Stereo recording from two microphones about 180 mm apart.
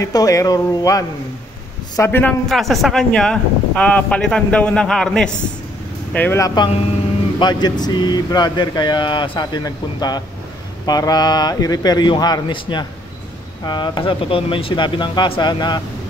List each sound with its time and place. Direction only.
0.0 s speech: 20° left (ahead or behind)